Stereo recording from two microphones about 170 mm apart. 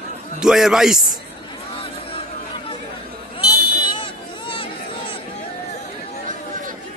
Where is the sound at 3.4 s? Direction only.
30° left (ahead or behind).